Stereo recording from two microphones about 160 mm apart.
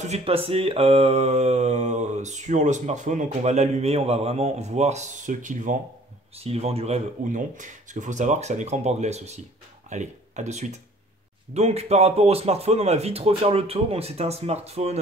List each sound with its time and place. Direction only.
0.0 s speech: 40° right (ahead or behind)
6.3 s speech: 40° right (ahead or behind)